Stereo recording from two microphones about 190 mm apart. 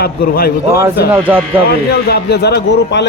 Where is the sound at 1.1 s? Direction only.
10° right (ahead or behind).